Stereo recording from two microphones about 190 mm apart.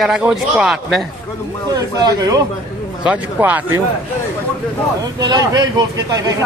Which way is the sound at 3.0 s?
10° right (ahead or behind).